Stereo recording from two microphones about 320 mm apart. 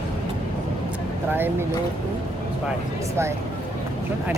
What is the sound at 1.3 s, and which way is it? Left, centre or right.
Speech, centre.